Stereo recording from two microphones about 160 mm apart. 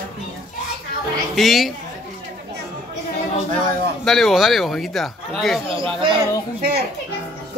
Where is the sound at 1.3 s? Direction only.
Centre (ahead or behind).